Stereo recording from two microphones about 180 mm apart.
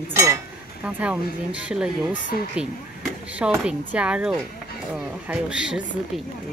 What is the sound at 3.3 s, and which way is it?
A woman's voice, 10° right (ahead or behind).